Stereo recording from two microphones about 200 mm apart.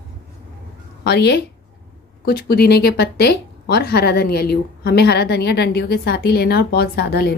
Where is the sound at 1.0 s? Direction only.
55° left (ahead or behind).